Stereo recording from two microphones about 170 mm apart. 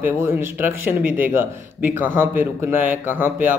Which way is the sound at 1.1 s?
10° right (ahead or behind).